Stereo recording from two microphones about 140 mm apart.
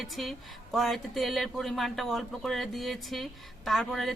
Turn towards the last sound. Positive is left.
turn(degrees=0)  # may be behind; listen again after turning